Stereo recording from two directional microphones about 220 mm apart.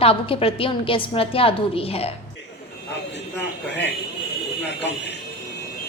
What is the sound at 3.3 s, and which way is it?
Speech, 50° left (ahead or behind).